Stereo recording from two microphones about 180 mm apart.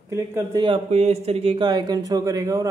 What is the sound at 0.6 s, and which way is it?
A man's voice, 35° right (ahead or behind).